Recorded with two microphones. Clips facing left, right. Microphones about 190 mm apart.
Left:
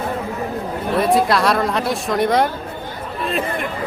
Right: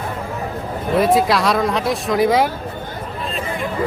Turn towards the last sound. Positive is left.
turn(degrees=0)  # may be behind; listen again after turning